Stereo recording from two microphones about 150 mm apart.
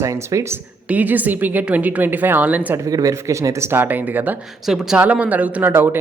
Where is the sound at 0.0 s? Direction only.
20° right (ahead or behind).